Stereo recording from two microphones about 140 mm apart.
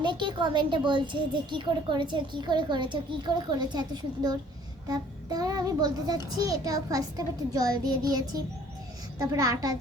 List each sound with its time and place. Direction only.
0.0 s a child's voice: 35° right (ahead or behind)